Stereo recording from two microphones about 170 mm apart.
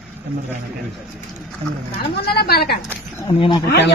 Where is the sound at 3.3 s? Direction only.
30° left (ahead or behind).